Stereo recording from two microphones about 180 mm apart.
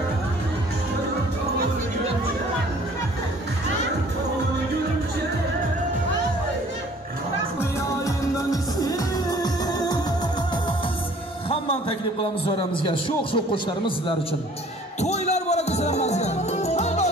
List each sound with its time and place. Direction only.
8.0 s music: 20° left (ahead or behind)
12.2 s a man's voice: 30° left (ahead or behind)
15.0 s music: 40° left (ahead or behind)